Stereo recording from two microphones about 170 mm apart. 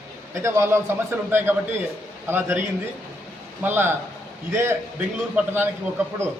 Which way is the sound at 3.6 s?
10° right (ahead or behind).